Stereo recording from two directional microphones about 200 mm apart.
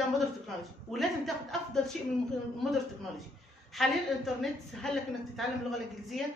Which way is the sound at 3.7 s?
Centre (ahead or behind).